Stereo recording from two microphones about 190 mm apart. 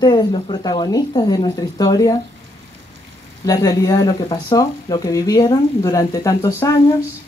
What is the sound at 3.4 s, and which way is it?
Speech, 20° left (ahead or behind).